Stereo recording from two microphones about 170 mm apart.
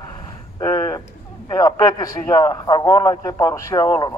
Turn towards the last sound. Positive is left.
turn(degrees=20)  # may be behind; listen again after turning